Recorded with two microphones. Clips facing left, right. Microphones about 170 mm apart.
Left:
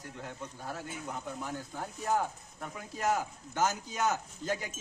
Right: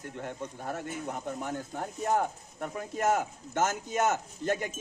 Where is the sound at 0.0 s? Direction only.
50° right (ahead or behind).